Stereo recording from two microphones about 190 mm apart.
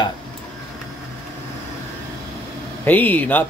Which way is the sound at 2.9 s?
10° left (ahead or behind).